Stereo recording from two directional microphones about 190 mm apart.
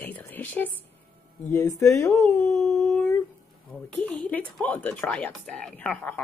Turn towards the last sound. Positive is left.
turn(degrees=10)  # may be behind; listen again after turning